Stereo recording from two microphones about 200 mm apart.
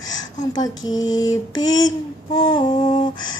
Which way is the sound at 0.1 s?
20° left (ahead or behind).